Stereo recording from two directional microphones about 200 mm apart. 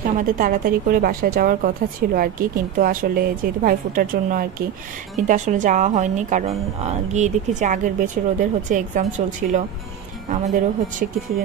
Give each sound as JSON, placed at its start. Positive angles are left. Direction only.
{"t": 0.0, "sound": "a woman's voice", "side_deg": -45}